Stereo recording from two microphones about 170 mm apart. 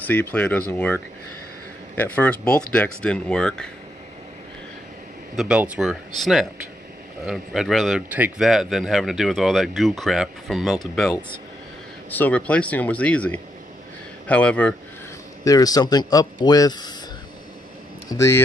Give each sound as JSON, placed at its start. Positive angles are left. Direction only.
{"t": 0.0, "sound": "speech", "side_deg": 10}
{"t": 5.3, "sound": "speech", "side_deg": -5}
{"t": 15.4, "sound": "speech", "side_deg": 20}
{"t": 18.1, "sound": "speech", "side_deg": 15}